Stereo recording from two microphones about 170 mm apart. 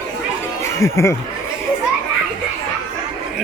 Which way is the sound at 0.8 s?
15° left (ahead or behind).